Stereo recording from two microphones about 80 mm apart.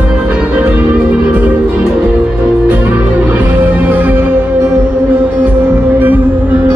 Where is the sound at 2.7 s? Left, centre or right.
Centre.